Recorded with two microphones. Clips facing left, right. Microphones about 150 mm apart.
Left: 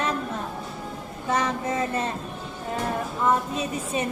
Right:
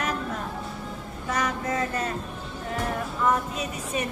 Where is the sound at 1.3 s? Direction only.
25° left (ahead or behind).